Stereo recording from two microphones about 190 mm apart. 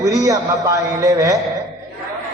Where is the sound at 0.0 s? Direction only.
15° right (ahead or behind).